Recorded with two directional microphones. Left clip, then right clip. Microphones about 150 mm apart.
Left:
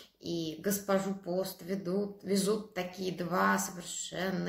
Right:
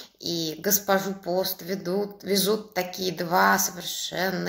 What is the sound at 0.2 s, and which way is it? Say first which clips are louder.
Speech: right 7 dB; 10° left (ahead or behind).